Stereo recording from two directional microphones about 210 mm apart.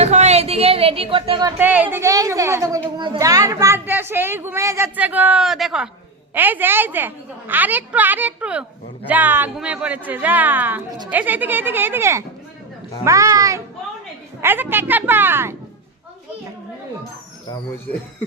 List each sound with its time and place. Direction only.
0.0 s a woman's voice: 30° right (ahead or behind)
1.5 s a child's voice: 10° right (ahead or behind)